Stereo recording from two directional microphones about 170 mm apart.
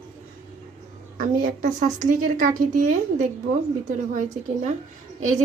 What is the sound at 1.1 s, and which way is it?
A woman's voice, 55° right (ahead or behind).